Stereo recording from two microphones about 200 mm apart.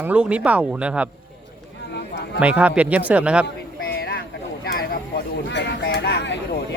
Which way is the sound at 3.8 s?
50° left (ahead or behind).